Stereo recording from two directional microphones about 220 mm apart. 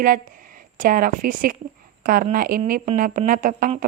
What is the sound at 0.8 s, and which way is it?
A woman's voice, 40° right (ahead or behind).